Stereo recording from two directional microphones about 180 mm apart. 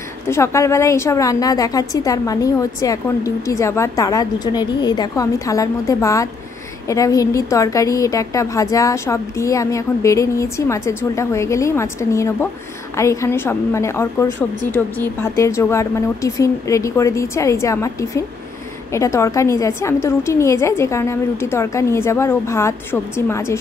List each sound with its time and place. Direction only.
0.3 s a woman's voice: 15° left (ahead or behind)